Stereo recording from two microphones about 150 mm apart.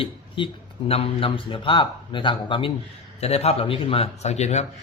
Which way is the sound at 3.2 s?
45° left (ahead or behind).